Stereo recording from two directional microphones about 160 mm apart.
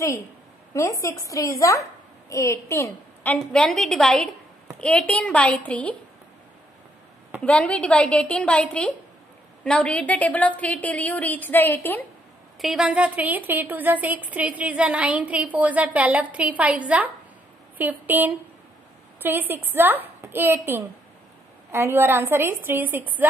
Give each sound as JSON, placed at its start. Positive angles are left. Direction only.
{"t": 1.0, "sound": "a woman's voice", "side_deg": 20}
{"t": 3.5, "sound": "a woman's voice", "side_deg": 5}
{"t": 7.4, "sound": "a woman's voice", "side_deg": 10}
{"t": 12.5, "sound": "a woman's voice", "side_deg": 0}